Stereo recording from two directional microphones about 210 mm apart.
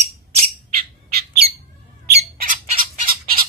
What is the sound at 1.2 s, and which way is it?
Squawk, 50° right (ahead or behind).